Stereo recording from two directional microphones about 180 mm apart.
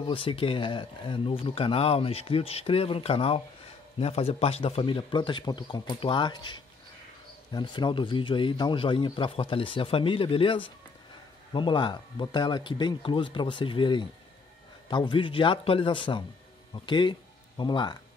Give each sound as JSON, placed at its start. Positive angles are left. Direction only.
{"t": 0.0, "sound": "speech", "side_deg": 30}